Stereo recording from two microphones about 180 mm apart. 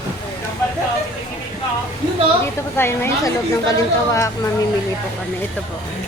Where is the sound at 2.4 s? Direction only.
15° left (ahead or behind).